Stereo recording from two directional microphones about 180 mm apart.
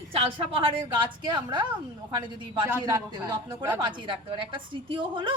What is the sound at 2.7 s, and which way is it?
A woman's voice, 20° right (ahead or behind).